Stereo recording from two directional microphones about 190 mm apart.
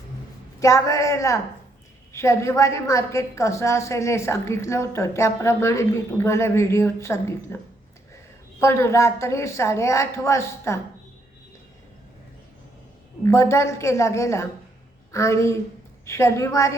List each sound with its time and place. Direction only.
0.6 s a woman's voice: 15° left (ahead or behind)
8.6 s a woman's voice: 15° left (ahead or behind)
13.2 s a woman's voice: 15° left (ahead or behind)